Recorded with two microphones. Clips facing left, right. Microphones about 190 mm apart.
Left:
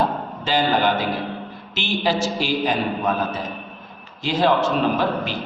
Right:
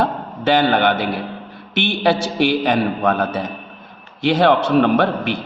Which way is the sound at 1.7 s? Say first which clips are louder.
Right 5 dB; 60° right (ahead or behind).